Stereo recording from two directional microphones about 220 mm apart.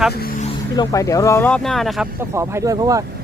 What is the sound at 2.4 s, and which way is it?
Speech, 15° right (ahead or behind).